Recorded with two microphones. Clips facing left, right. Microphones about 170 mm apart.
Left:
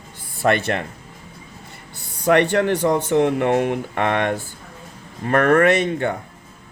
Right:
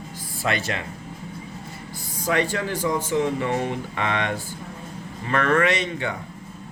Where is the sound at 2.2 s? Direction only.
65° left (ahead or behind).